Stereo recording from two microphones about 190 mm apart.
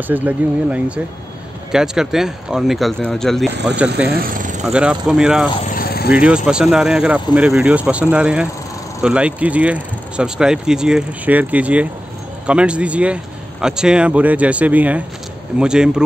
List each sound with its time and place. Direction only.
0.1 s speech: 5° right (ahead or behind)
4.1 s speech: 50° right (ahead or behind)
4.6 s speech: 5° right (ahead or behind)
5.7 s vehicle: 50° left (ahead or behind)
6.1 s speech: 5° right (ahead or behind)